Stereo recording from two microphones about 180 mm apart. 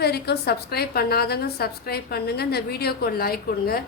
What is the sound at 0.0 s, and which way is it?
A woman's voice, 60° left (ahead or behind).